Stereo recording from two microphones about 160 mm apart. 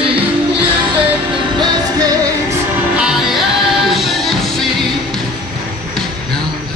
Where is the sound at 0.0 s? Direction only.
35° right (ahead or behind).